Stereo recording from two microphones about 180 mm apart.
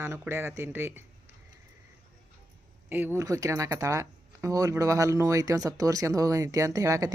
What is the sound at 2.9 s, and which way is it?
Speech, 10° right (ahead or behind).